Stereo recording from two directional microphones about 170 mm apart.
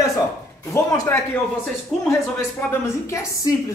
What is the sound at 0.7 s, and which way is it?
Speech, 15° left (ahead or behind).